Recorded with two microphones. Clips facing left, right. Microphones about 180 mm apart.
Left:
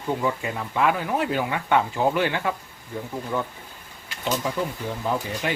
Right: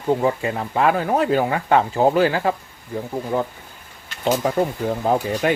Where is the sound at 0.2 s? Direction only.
40° right (ahead or behind).